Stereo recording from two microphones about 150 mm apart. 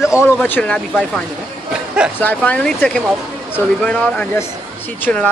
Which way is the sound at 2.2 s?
10° left (ahead or behind).